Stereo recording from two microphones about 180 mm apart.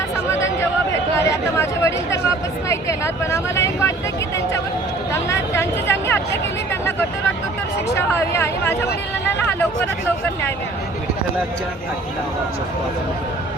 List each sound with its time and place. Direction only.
1.3 s chatter: 15° left (ahead or behind)
2.6 s speech: 15° left (ahead or behind)
5.1 s speech: 15° left (ahead or behind)
7.9 s speech: 15° left (ahead or behind)